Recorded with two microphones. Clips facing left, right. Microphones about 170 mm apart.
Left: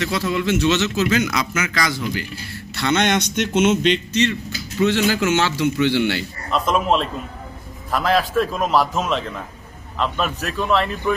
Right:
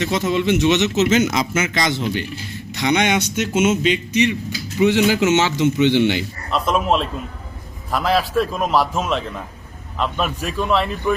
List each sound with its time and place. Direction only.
0.0 s speech: 20° right (ahead or behind)
6.5 s a man's voice: centre (ahead or behind)